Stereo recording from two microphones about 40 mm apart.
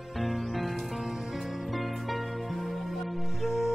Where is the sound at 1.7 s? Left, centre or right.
Centre.